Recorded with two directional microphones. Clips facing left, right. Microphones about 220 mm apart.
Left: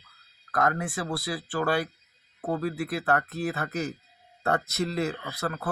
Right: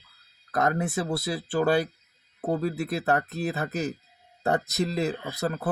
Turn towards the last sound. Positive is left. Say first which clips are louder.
# right 3 dB
turn(degrees=-20)  # may be behind; listen again after turning